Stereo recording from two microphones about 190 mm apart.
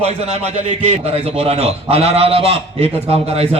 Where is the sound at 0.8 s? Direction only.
35° right (ahead or behind).